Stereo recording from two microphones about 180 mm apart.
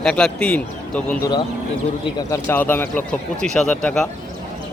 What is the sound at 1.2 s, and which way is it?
Speech, 25° left (ahead or behind).